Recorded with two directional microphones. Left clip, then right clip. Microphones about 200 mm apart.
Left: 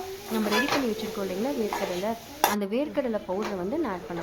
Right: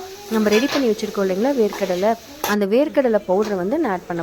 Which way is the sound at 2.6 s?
35° right (ahead or behind).